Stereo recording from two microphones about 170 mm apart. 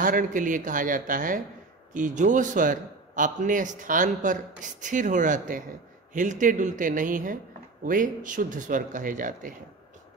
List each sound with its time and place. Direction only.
0.0 s a man's voice: 50° right (ahead or behind)